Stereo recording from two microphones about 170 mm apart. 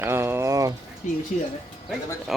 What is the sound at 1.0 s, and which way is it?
Speech, 45° left (ahead or behind).